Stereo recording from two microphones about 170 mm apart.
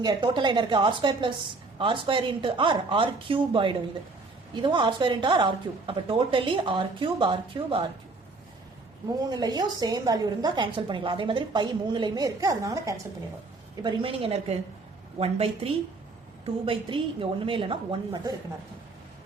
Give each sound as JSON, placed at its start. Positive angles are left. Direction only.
{"t": 0.0, "sound": "a woman's voice", "side_deg": -25}
{"t": 9.4, "sound": "a woman's voice", "side_deg": -25}
{"t": 13.8, "sound": "a woman's voice", "side_deg": -30}